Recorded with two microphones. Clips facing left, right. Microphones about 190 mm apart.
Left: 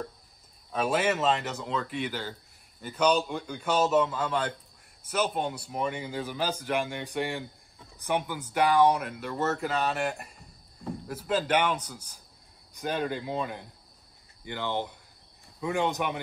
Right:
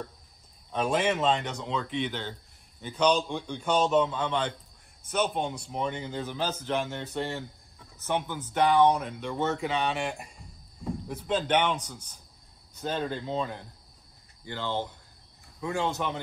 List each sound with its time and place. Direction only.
0.7 s a man's voice: 5° left (ahead or behind)